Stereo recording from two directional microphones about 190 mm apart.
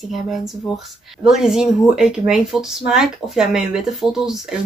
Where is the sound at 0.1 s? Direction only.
Centre (ahead or behind).